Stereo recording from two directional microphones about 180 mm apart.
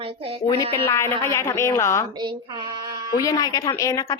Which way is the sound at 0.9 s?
15° left (ahead or behind).